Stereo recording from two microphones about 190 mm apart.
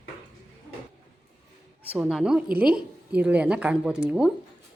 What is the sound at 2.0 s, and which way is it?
A woman's voice, 5° right (ahead or behind).